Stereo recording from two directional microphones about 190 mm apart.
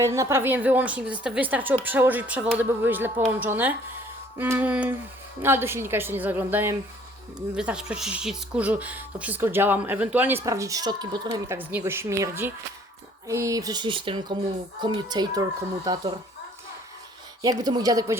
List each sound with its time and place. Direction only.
0.0 s speech: 15° right (ahead or behind)
17.4 s speech: 20° right (ahead or behind)